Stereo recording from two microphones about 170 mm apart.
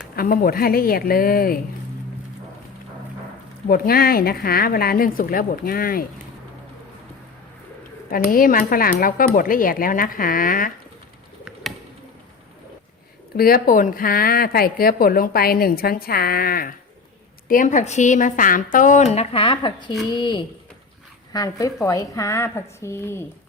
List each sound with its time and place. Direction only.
0.2 s speech: 60° left (ahead or behind)
3.7 s speech: 60° left (ahead or behind)
8.1 s speech: 55° left (ahead or behind)
13.3 s speech: 60° left (ahead or behind)
17.5 s a woman's voice: 50° left (ahead or behind); by 23.2 s 15° left (ahead or behind)